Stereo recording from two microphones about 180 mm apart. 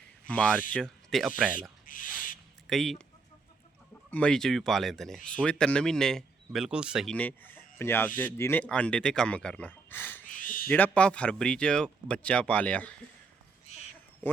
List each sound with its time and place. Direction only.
0.3 s speech: 10° left (ahead or behind)
1.9 s owl: 50° left (ahead or behind)
2.6 s speech: centre (ahead or behind)
4.1 s speech: 5° left (ahead or behind)
10.2 s a sound: 50° left (ahead or behind)
10.7 s speech: 10° left (ahead or behind)